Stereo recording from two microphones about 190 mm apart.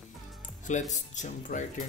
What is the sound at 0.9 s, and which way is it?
Speech, 40° left (ahead or behind).